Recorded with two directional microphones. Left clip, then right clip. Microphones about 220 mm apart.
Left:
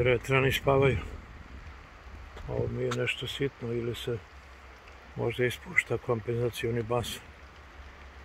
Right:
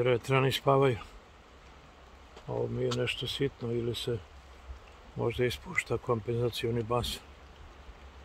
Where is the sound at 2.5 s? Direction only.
15° right (ahead or behind).